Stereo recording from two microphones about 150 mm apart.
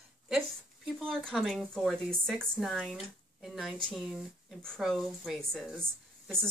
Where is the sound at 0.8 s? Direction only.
Centre (ahead or behind).